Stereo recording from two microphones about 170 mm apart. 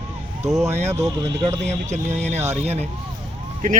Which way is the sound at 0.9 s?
20° right (ahead or behind).